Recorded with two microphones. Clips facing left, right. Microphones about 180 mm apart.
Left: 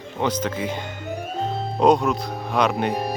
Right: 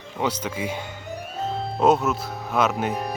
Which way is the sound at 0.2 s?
10° right (ahead or behind).